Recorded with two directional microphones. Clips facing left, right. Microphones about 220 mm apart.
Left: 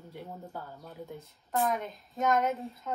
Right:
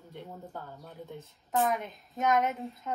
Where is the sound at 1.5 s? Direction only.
Centre (ahead or behind).